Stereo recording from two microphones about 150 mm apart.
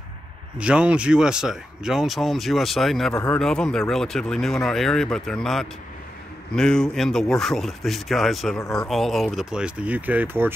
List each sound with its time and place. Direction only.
0.6 s speech: 5° right (ahead or behind)
8.5 s speech: 20° left (ahead or behind)
8.8 s speech: centre (ahead or behind)